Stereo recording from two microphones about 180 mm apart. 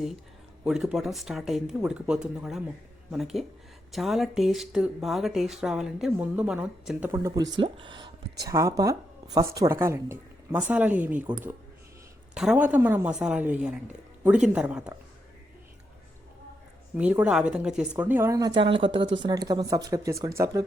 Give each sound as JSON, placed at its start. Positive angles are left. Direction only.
{"t": 0.6, "sound": "speech", "side_deg": -5}
{"t": 12.3, "sound": "speech", "side_deg": -5}
{"t": 17.0, "sound": "speech", "side_deg": -5}